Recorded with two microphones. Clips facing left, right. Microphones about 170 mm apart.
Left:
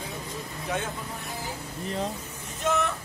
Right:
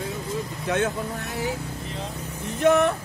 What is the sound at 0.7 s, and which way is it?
Speech, 80° right.